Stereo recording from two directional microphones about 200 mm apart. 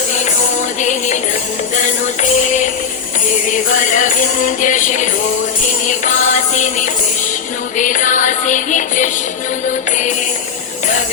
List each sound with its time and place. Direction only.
0.8 s music: 35° left (ahead or behind)